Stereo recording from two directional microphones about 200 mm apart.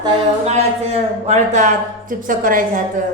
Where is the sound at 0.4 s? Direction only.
35° right (ahead or behind).